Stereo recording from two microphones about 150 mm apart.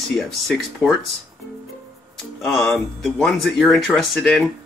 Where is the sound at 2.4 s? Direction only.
Centre (ahead or behind).